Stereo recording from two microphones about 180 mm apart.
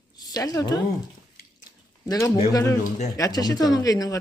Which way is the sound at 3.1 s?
20° left (ahead or behind).